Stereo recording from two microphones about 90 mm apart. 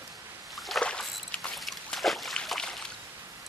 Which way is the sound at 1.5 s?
Centre (ahead or behind).